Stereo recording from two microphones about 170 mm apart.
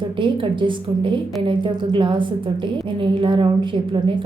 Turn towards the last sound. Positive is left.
turn(degrees=-30)  # may be behind; listen again after turning